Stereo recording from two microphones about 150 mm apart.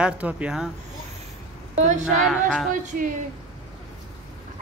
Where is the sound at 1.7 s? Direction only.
50° right (ahead or behind).